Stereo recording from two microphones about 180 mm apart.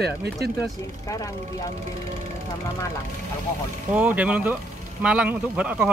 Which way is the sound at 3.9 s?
5° right (ahead or behind).